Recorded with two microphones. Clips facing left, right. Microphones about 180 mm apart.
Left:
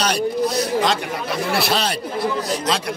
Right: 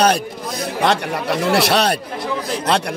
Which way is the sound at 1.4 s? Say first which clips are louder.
Right 5 dB; 65° right (ahead or behind).